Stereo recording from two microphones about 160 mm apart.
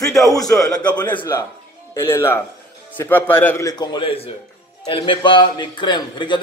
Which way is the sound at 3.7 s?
30° left (ahead or behind).